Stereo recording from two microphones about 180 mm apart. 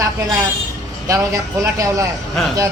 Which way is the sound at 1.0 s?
15° right (ahead or behind).